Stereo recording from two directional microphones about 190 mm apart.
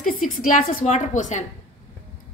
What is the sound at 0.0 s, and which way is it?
A woman's voice, 45° left (ahead or behind).